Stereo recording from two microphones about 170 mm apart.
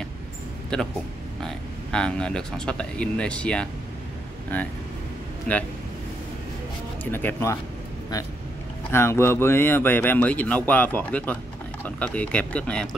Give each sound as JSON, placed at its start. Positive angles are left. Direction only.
{"t": 0.7, "sound": "speech", "side_deg": 5}
{"t": 7.1, "sound": "speech", "side_deg": 10}
{"t": 8.9, "sound": "speech", "side_deg": 15}